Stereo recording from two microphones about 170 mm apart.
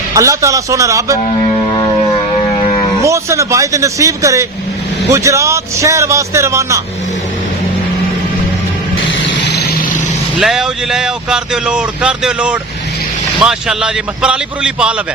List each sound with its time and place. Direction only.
0.1 s speech: 20° right (ahead or behind)
3.0 s a man's voice: 20° right (ahead or behind)
9.5 s vehicle: 75° left (ahead or behind)
10.3 s speech: centre (ahead or behind)